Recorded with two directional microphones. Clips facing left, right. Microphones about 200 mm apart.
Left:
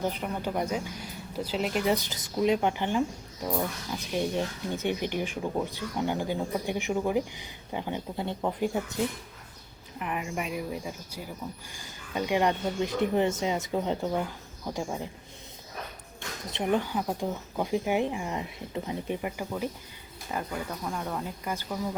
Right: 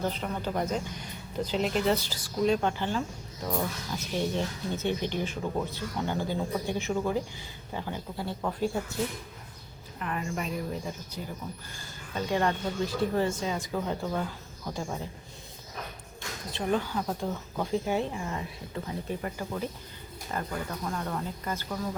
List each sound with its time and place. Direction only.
0.0 s speech: 15° left (ahead or behind)
10.0 s speech: 15° left (ahead or behind)
16.5 s speech: 20° left (ahead or behind)